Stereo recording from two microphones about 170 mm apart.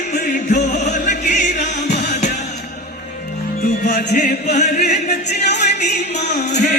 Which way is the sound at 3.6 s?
55° left (ahead or behind).